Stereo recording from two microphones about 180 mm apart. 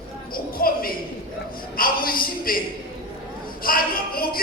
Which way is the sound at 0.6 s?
55° left (ahead or behind).